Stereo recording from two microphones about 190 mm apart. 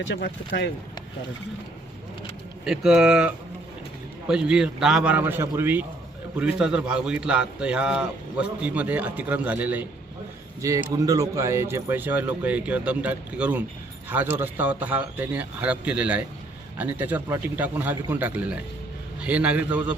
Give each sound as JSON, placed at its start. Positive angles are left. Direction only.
{"t": 0.0, "sound": "speech", "side_deg": 70}
{"t": 2.6, "sound": "a man's voice", "side_deg": -5}